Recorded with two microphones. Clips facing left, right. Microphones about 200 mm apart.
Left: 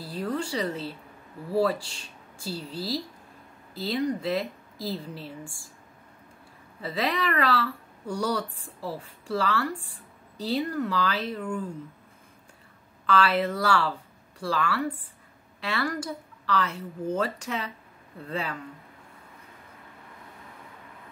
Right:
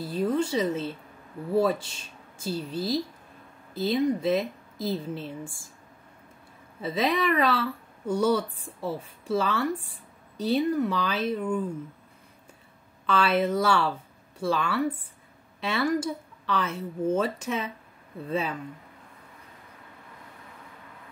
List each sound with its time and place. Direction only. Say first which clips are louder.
0.0 s speech: right 5 dB; 20° right (ahead or behind)
6.8 s speech: right 3 dB; 20° right (ahead or behind)
13.0 s speech: even; 20° right (ahead or behind)